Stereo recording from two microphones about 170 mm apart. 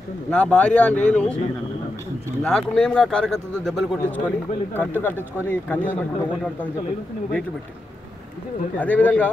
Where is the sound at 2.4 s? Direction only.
5° left (ahead or behind).